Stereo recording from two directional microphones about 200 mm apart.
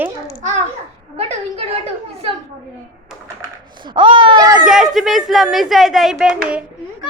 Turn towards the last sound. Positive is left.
turn(degrees=-5)  # may be behind; listen again after turning